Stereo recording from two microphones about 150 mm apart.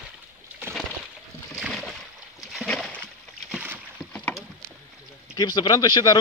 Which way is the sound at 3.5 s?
10° right (ahead or behind).